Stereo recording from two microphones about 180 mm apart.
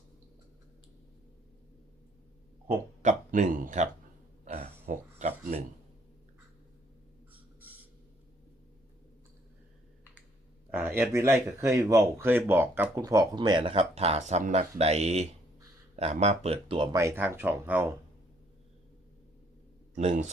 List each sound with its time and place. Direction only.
2.6 s speech: 40° right (ahead or behind)
4.4 s a sound: 35° right (ahead or behind)
10.7 s speech: 10° right (ahead or behind); by 17.0 s 25° right (ahead or behind)
17.0 s speech: 15° right (ahead or behind)
20.0 s speech: 35° right (ahead or behind)